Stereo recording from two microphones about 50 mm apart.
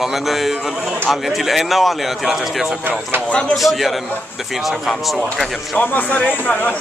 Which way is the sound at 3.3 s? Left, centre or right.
Centre.